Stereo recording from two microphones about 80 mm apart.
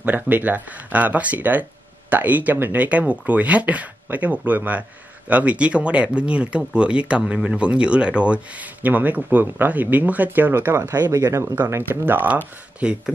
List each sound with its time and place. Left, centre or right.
0.0 s speech: right
11.7 s speech: right